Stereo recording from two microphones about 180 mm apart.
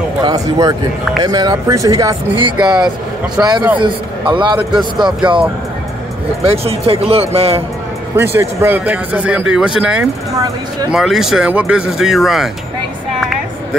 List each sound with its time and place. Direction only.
0.2 s speech: 20° right (ahead or behind)
3.4 s speech: 10° right (ahead or behind)
3.8 s speech: 25° right (ahead or behind)
6.5 s speech: 35° right (ahead or behind)
8.2 s speech: 15° right (ahead or behind)